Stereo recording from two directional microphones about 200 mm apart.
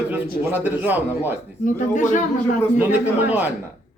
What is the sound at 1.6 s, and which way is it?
Speech, 40° left (ahead or behind).